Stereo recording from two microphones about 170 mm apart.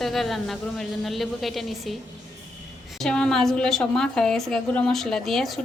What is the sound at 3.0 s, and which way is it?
A woman's voice, 5° left (ahead or behind).